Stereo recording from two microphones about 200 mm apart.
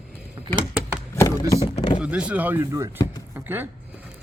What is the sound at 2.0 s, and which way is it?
Speech, 5° right (ahead or behind).